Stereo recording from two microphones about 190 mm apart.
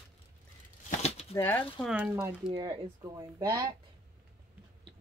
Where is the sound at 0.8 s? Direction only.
35° left (ahead or behind).